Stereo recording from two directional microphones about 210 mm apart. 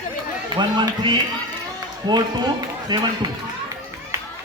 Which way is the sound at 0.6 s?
20° right (ahead or behind).